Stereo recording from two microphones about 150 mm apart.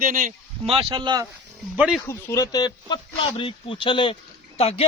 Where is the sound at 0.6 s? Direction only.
35° right (ahead or behind).